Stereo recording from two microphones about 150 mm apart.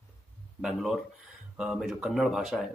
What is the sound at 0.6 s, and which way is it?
Speech, 5° right (ahead or behind).